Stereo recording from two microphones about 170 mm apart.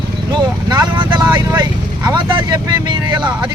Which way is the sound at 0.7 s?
25° right (ahead or behind).